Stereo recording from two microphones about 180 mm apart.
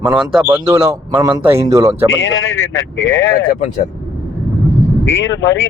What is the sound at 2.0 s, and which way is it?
Speech, 90° left.